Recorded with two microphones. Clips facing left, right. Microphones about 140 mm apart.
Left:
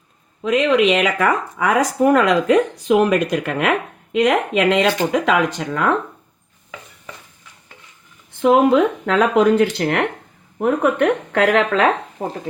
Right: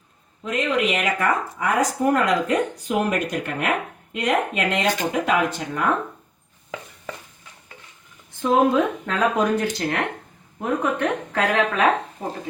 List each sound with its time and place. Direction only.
0.4 s speech: 90° left
8.4 s speech: 75° left (ahead or behind)